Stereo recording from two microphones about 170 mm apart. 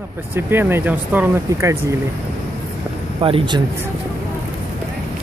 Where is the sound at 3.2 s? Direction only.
30° right (ahead or behind).